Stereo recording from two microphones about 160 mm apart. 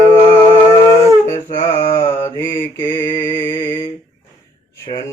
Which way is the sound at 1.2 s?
15° left (ahead or behind).